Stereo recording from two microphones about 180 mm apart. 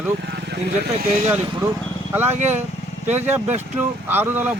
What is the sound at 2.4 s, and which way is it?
Speech, 40° right (ahead or behind).